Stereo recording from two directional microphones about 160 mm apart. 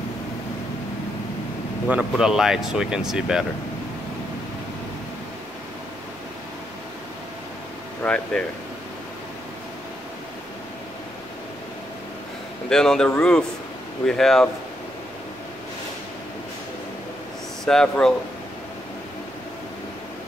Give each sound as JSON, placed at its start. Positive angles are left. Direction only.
{"t": 1.9, "sound": "speech", "side_deg": -5}
{"t": 8.0, "sound": "speech", "side_deg": 5}
{"t": 12.6, "sound": "speech", "side_deg": 5}
{"t": 17.6, "sound": "speech", "side_deg": 5}